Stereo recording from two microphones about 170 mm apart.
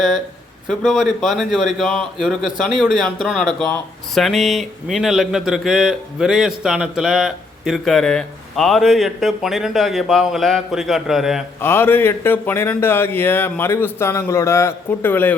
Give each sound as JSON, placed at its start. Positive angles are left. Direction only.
{"t": 0.7, "sound": "a man's voice", "side_deg": 0}
{"t": 11.6, "sound": "speech", "side_deg": 15}